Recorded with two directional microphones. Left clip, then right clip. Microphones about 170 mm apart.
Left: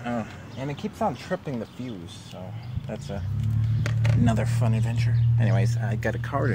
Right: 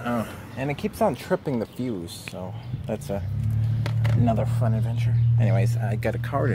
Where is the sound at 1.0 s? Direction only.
55° right (ahead or behind).